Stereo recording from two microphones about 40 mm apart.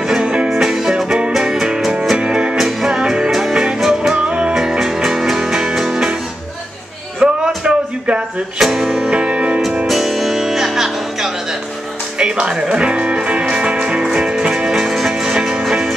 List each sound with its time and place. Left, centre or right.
0.0 s music: centre
2.5 s music: centre
3.3 s music: centre
4.2 s music: right
4.6 s music: centre
7.2 s music: right
8.5 s music: centre
9.1 s music: right
9.8 s music: centre
12.2 s music: right